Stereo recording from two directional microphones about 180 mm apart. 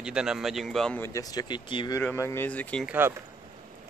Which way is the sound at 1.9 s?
15° left (ahead or behind).